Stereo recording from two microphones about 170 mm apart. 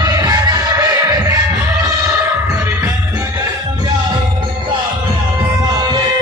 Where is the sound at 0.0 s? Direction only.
20° right (ahead or behind).